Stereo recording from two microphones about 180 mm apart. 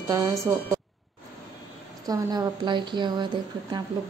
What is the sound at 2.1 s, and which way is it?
A woman's voice, 25° right (ahead or behind).